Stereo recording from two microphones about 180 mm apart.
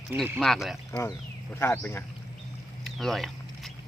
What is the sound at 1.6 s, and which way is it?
Speech, 10° left (ahead or behind).